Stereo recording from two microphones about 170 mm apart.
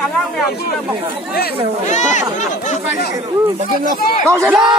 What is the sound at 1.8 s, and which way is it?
Speech, 45° left (ahead or behind).